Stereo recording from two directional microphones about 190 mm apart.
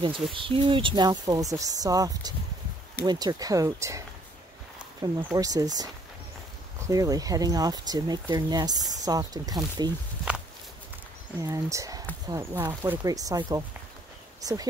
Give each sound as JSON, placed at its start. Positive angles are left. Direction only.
{"t": 0.3, "sound": "speech", "side_deg": -25}
{"t": 5.0, "sound": "speech", "side_deg": -20}
{"t": 6.9, "sound": "speech", "side_deg": -20}
{"t": 11.3, "sound": "speech", "side_deg": -15}